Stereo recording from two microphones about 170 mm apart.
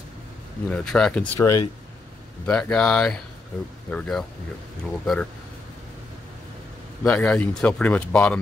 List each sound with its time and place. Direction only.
0.7 s speech: 5° left (ahead or behind)
1.4 s speech: 20° left (ahead or behind)
2.4 s speech: 5° left (ahead or behind)
7.0 s speech: 10° left (ahead or behind)